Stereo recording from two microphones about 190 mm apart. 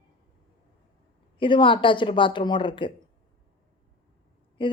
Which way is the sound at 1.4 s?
25° left (ahead or behind).